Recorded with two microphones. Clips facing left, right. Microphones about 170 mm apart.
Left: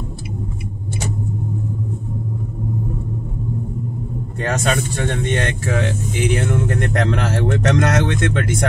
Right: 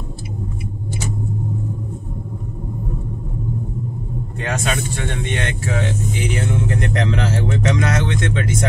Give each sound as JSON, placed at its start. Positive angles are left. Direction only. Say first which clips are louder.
{"t": 4.4, "sound": "speech", "louder": "left 3 dB", "side_deg": 40}